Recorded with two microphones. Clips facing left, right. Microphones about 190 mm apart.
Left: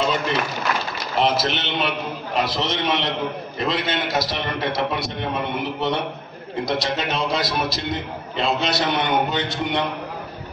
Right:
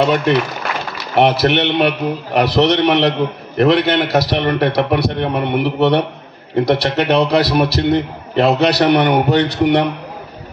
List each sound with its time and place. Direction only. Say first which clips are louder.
0.0 s a man's voice: right 8 dB; 65° right (ahead or behind)